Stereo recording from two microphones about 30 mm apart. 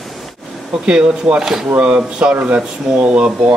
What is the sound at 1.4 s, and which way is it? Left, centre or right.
Speech, centre.